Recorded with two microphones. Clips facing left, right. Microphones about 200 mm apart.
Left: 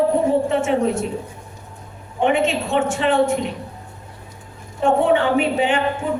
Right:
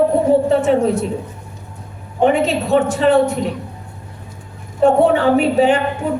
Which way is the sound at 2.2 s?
40° right (ahead or behind).